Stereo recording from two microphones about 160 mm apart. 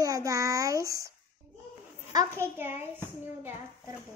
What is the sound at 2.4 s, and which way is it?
Speech, 15° right (ahead or behind).